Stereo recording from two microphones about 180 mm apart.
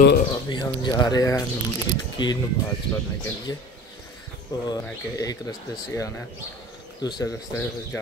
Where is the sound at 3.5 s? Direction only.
20° left (ahead or behind).